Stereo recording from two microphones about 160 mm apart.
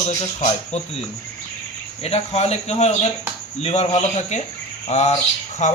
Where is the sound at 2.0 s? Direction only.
40° left (ahead or behind).